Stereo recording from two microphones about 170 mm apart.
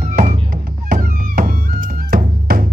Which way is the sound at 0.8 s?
50° right (ahead or behind).